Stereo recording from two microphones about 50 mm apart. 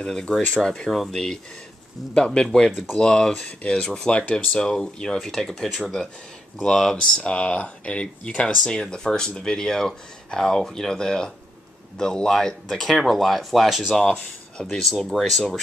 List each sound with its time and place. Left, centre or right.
0.0 s speech: centre
4.6 s speech: centre
5.2 s speech: centre; by 8.5 s left
8.6 s speech: centre
13.9 s speech: centre